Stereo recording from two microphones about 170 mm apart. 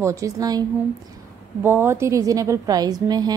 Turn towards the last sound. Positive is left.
turn(degrees=-25)  # may be behind; listen again after turning